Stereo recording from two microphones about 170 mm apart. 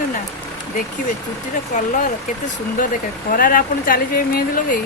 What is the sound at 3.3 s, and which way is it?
Speech, 55° left (ahead or behind).